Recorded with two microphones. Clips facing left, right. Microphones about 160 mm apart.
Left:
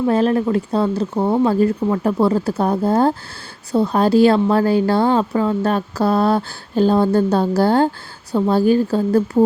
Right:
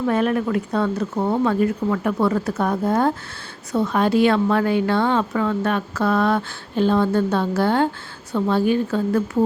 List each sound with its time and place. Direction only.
0.0 s a woman's voice: 30° left (ahead or behind)